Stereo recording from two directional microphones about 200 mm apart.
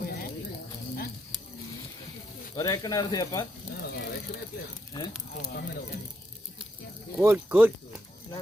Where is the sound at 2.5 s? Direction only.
15° left (ahead or behind).